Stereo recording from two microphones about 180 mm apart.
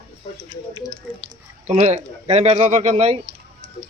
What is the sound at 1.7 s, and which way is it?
Speech, 40° right (ahead or behind).